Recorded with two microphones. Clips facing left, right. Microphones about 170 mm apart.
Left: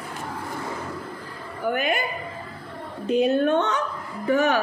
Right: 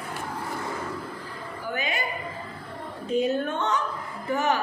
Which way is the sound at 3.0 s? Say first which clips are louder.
Left 5 dB; 70° left (ahead or behind).